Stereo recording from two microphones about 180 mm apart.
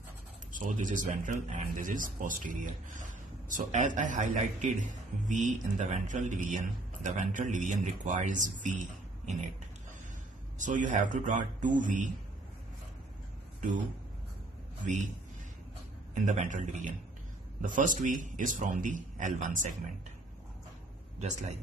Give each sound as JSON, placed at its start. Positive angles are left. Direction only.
{"t": 0.5, "sound": "speech", "side_deg": -45}
{"t": 10.6, "sound": "speech", "side_deg": -45}
{"t": 16.3, "sound": "speech", "side_deg": -45}
{"t": 21.2, "sound": "a man's voice", "side_deg": -40}